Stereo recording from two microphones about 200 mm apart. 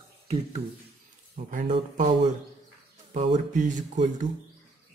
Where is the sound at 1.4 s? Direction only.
40° right (ahead or behind).